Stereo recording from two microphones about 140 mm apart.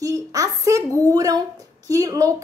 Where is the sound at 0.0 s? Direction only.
25° right (ahead or behind).